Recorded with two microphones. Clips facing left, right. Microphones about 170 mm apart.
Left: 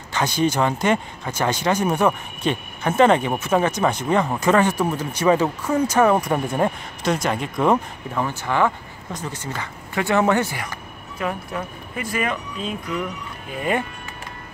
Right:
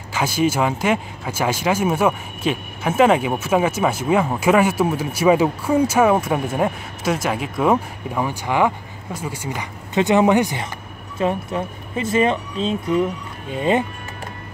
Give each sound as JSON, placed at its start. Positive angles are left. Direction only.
{"t": 0.1, "sound": "speech", "side_deg": -5}